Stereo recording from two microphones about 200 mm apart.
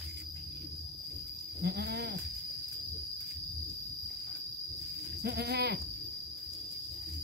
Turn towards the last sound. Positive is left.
turn(degrees=-55)  # may be behind; listen again after turning